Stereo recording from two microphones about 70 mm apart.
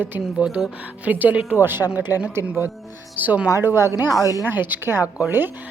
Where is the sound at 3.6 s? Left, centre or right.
Right.